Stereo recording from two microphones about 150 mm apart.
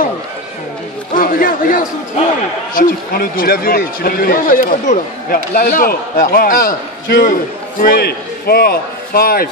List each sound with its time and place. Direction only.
1.1 s a man's voice: 65° left (ahead or behind)
7.8 s a man's voice: 90° left